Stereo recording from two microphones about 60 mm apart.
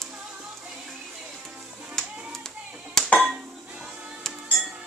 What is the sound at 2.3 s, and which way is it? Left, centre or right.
Music, centre.